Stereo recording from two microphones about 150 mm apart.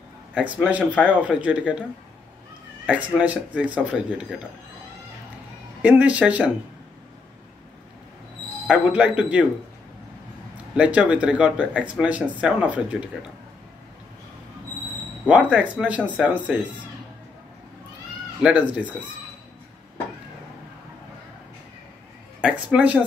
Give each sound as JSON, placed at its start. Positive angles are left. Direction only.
{"t": 0.3, "sound": "a man's voice", "side_deg": -10}
{"t": 2.9, "sound": "speech", "side_deg": -10}
{"t": 5.8, "sound": "speech", "side_deg": -10}
{"t": 8.6, "sound": "speech", "side_deg": -10}
{"t": 10.8, "sound": "speech", "side_deg": -10}
{"t": 15.2, "sound": "speech", "side_deg": -10}
{"t": 18.4, "sound": "speech", "side_deg": -10}
{"t": 22.4, "sound": "speech", "side_deg": -5}